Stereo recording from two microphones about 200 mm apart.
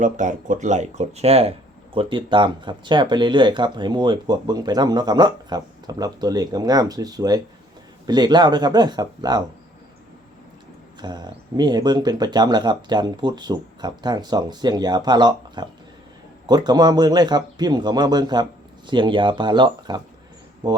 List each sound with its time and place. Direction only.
0.0 s speech: 40° right (ahead or behind); by 9.4 s 20° right (ahead or behind)
11.0 s speech: 20° right (ahead or behind)